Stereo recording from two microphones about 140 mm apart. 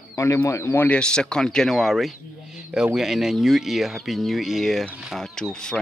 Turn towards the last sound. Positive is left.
turn(degrees=5)  # may be behind; listen again after turning